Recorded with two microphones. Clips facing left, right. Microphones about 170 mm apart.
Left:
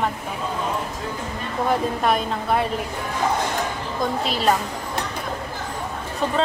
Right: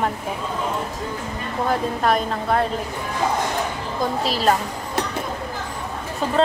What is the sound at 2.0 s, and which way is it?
Speech, centre (ahead or behind).